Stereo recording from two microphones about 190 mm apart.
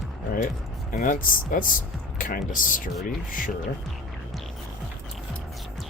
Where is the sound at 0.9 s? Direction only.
45° left (ahead or behind).